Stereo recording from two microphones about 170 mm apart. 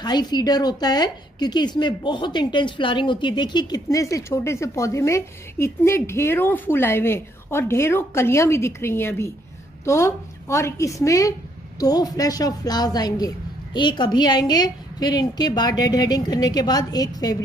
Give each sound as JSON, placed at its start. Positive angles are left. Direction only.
{"t": 0.0, "sound": "a woman's voice", "side_deg": 25}